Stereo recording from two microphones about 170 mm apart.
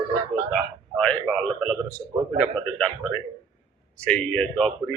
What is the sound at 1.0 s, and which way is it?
Speech, 5° left (ahead or behind).